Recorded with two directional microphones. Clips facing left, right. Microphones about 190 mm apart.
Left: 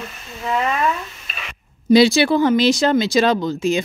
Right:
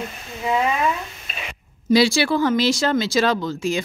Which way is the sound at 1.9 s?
20° left (ahead or behind).